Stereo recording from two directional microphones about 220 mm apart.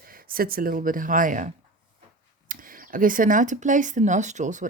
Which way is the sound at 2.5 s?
40° right (ahead or behind).